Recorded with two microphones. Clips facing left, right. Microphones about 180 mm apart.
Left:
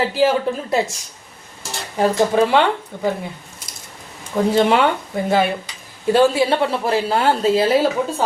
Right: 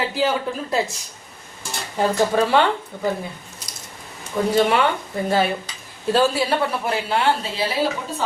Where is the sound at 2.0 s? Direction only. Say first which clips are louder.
Left 3 dB; 15° left (ahead or behind).